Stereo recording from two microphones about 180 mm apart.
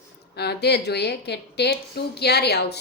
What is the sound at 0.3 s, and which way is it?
A woman's voice, 65° left (ahead or behind).